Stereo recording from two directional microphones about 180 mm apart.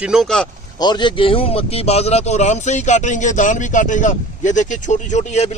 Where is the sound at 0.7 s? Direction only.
25° left (ahead or behind).